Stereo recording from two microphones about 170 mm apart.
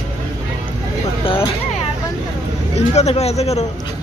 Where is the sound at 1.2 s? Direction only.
30° left (ahead or behind).